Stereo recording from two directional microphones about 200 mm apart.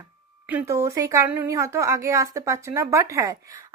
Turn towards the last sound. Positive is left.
turn(degrees=-15)  # may be behind; listen again after turning